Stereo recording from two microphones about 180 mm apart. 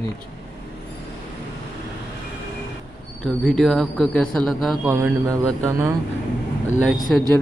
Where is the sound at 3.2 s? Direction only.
5° left (ahead or behind).